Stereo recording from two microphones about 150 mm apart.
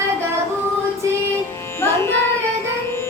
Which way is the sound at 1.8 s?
15° left (ahead or behind).